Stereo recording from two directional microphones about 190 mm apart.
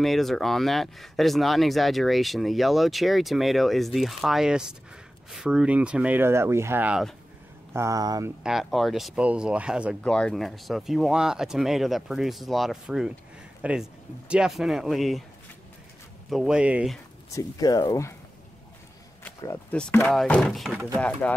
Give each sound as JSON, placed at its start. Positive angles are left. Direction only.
{"t": 0.0, "sound": "speech", "side_deg": 0}
{"t": 7.7, "sound": "speech", "side_deg": -15}
{"t": 8.5, "sound": "speech", "side_deg": 0}
{"t": 10.0, "sound": "speech", "side_deg": 5}
{"t": 16.3, "sound": "speech", "side_deg": 0}
{"t": 17.3, "sound": "speech", "side_deg": 20}
{"t": 19.7, "sound": "speech", "side_deg": 5}